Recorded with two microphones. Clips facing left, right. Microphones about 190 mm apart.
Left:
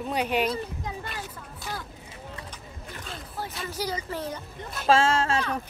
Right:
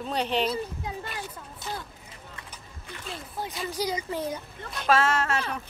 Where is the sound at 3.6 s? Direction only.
15° right (ahead or behind).